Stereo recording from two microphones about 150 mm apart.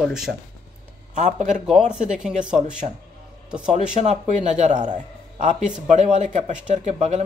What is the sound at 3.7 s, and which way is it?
Speech, 50° right (ahead or behind).